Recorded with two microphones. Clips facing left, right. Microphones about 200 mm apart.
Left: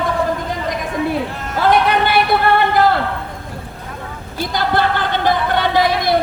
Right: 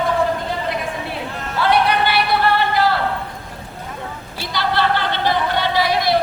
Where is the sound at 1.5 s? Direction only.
45° left (ahead or behind).